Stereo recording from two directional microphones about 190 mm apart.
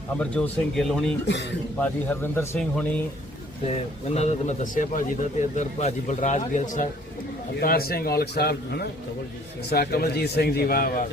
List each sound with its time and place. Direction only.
0.2 s speech: 5° left (ahead or behind)
1.3 s a man's voice: 65° left (ahead or behind)
1.8 s speech: 10° left (ahead or behind)
4.1 s a man's voice: 35° left (ahead or behind)